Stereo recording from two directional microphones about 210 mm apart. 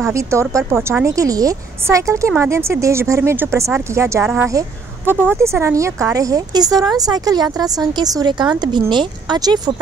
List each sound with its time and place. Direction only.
0.0 s speech: 15° right (ahead or behind)